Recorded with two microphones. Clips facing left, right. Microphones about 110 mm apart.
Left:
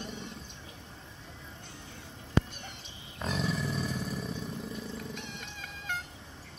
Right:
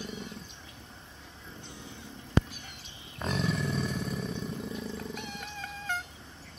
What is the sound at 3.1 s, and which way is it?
Roar, centre (ahead or behind).